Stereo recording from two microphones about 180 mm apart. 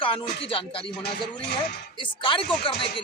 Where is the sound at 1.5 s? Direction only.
65° left (ahead or behind).